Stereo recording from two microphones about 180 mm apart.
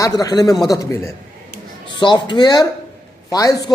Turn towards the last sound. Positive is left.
turn(degrees=20)  # may be behind; listen again after turning